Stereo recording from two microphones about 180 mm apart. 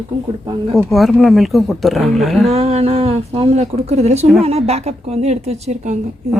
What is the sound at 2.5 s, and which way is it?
A woman's voice, 35° right (ahead or behind).